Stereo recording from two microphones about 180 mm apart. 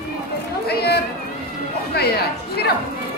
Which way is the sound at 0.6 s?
60° left (ahead or behind).